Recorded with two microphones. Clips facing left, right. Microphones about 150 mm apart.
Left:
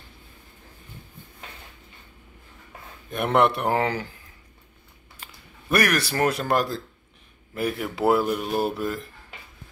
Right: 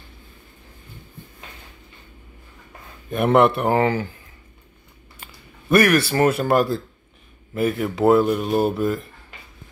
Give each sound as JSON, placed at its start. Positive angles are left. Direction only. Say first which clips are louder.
{"t": 3.1, "sound": "speech", "louder": "right 5 dB", "side_deg": 0}
{"t": 5.2, "sound": "speech", "louder": "right 2 dB", "side_deg": 0}